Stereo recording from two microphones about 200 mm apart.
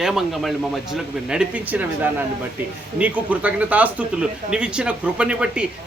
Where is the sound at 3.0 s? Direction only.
5° right (ahead or behind).